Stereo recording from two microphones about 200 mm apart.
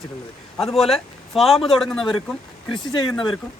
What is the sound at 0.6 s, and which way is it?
Speech, centre (ahead or behind).